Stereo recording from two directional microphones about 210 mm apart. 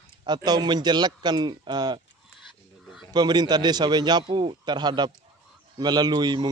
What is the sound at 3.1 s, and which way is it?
Speech, 20° right (ahead or behind).